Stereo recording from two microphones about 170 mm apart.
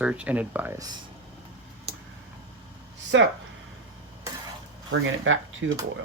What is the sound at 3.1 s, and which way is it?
Speech, 90° right.